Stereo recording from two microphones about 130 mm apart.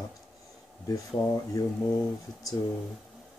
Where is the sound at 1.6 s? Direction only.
25° left (ahead or behind).